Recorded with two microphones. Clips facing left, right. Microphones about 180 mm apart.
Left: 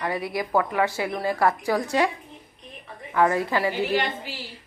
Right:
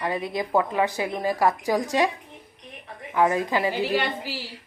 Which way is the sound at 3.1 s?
15° right (ahead or behind).